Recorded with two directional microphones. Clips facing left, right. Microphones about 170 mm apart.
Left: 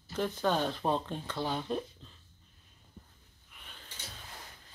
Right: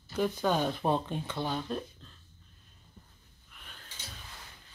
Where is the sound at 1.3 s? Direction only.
10° left (ahead or behind).